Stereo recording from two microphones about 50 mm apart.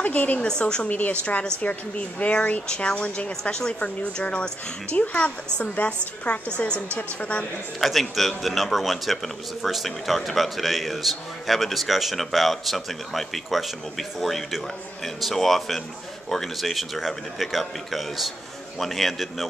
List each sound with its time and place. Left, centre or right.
0.0 s a woman's voice: left
0.5 s a woman's voice: centre
0.8 s a woman's voice: left
7.8 s speech: centre